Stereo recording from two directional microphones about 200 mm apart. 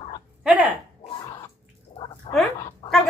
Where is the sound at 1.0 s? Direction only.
20° left (ahead or behind).